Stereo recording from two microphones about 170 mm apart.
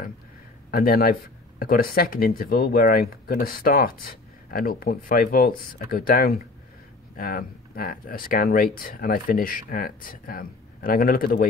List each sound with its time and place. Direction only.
0.7 s speech: 60° left (ahead or behind)